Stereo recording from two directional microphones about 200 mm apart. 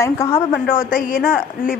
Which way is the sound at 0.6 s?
45° left (ahead or behind).